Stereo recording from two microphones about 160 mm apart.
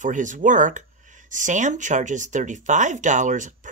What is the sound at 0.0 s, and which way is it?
Speech, 50° right (ahead or behind).